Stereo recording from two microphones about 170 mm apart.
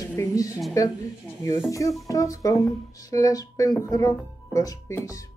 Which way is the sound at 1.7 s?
20° left (ahead or behind).